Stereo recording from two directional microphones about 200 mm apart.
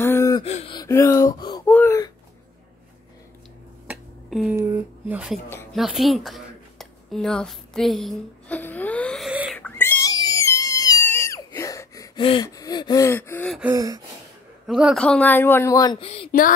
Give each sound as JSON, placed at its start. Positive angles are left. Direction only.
{"t": 0.0, "sound": "gasp", "side_deg": 15}
{"t": 0.4, "sound": "gasp", "side_deg": 30}
{"t": 0.7, "sound": "speech", "side_deg": 15}
{"t": 1.7, "sound": "wail", "side_deg": 10}
{"t": 3.8, "sound": "finger snapping", "side_deg": -5}
{"t": 4.6, "sound": "speech", "side_deg": -10}
{"t": 5.5, "sound": "speech", "side_deg": 10}
{"t": 5.8, "sound": "a sound", "side_deg": 0}
{"t": 9.6, "sound": "a sound", "side_deg": 10}
{"t": 13.7, "sound": "gasp", "side_deg": -15}
{"t": 14.7, "sound": "speech", "side_deg": -5}
{"t": 16.3, "sound": "speech", "side_deg": 45}